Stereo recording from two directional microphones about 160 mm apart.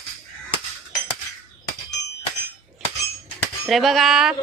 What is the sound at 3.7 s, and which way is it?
Speech, centre (ahead or behind).